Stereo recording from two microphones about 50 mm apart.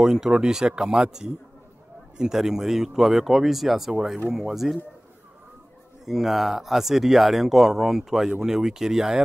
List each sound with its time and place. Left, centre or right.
0.0 s speech: centre
6.0 s speech: centre
8.3 s speech: centre
8.5 s speech: centre